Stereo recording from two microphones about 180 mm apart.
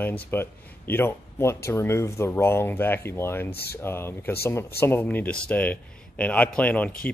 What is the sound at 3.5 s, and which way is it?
Speech, 60° left (ahead or behind).